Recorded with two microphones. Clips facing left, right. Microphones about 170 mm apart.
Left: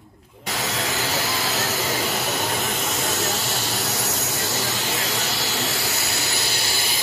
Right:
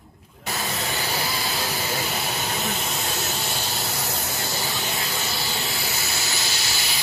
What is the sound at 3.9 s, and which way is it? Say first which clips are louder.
Jet engine: left 3 dB; 80° left.